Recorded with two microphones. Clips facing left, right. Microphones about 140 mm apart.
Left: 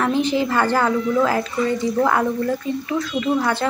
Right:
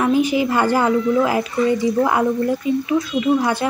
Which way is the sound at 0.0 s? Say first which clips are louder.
Right 2 dB; 10° right (ahead or behind).